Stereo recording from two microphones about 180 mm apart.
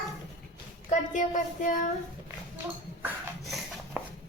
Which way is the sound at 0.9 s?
45° left (ahead or behind).